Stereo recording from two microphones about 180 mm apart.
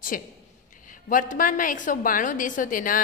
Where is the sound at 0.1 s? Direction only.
50° left (ahead or behind).